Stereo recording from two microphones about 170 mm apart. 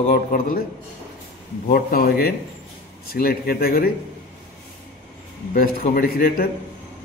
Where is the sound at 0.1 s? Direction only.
55° left (ahead or behind).